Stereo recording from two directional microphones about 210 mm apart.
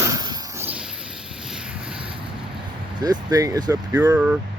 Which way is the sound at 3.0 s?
15° right (ahead or behind).